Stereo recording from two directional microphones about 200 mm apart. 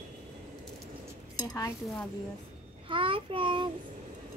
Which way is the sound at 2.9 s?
25° right (ahead or behind).